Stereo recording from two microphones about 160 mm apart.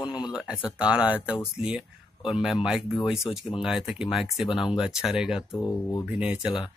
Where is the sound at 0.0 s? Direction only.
25° left (ahead or behind).